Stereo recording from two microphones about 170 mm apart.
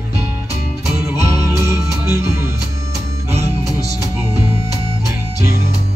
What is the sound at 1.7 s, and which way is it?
Music, 15° right (ahead or behind).